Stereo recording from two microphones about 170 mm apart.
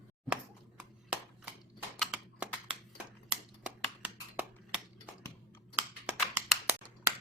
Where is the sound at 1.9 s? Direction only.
5° right (ahead or behind).